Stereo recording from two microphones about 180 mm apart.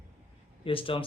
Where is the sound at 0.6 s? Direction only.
30° left (ahead or behind).